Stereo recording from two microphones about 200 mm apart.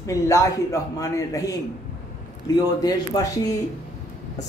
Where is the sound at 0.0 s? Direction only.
15° left (ahead or behind).